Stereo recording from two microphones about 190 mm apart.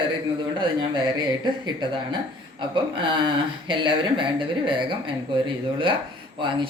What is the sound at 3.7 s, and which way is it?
Speech, 25° right (ahead or behind).